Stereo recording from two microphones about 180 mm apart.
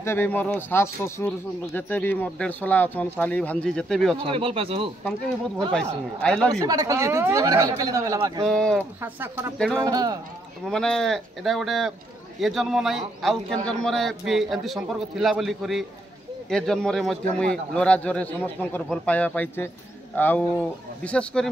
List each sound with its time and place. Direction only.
0.0 s a man's voice: 15° left (ahead or behind)
4.3 s speech: 30° right (ahead or behind)
6.2 s a man's voice: 5° left (ahead or behind)
6.6 s speech: 20° right (ahead or behind)
8.5 s a man's voice: 5° left (ahead or behind)
9.0 s speech: 10° right (ahead or behind)
10.6 s a man's voice: 5° left (ahead or behind)